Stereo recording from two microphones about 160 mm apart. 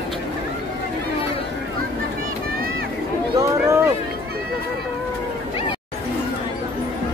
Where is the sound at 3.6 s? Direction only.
20° right (ahead or behind).